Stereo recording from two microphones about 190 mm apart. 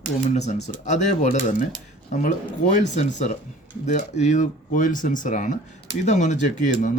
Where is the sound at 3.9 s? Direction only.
40° left (ahead or behind).